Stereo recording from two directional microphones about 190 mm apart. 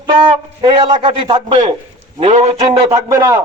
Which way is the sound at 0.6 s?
25° right (ahead or behind).